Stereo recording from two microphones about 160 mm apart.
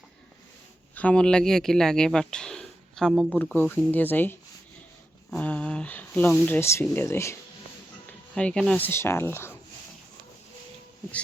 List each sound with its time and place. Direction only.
0.9 s speech: 5° left (ahead or behind)
3.3 s speech: 10° left (ahead or behind)
8.4 s speech: 5° left (ahead or behind)